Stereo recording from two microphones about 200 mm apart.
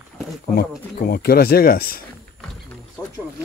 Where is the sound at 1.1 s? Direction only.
50° left (ahead or behind).